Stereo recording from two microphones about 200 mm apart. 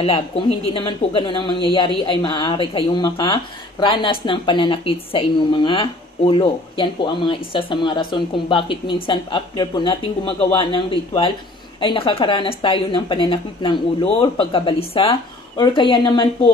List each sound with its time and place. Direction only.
0.7 s a woman's voice: 25° left (ahead or behind)